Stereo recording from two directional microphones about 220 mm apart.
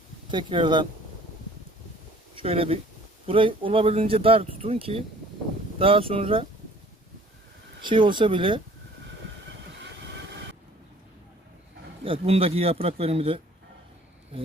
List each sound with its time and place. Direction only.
0.3 s speech: 20° right (ahead or behind)
2.3 s speech: 25° right (ahead or behind)
7.8 s speech: 20° right (ahead or behind)
12.0 s speech: 25° right (ahead or behind)